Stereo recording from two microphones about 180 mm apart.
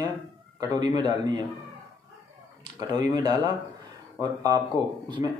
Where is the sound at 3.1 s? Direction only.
20° right (ahead or behind).